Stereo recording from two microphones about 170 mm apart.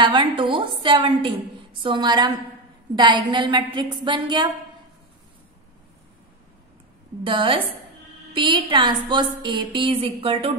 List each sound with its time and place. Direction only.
0.0 s a woman's voice: 30° right (ahead or behind)
7.2 s a woman's voice: 30° right (ahead or behind)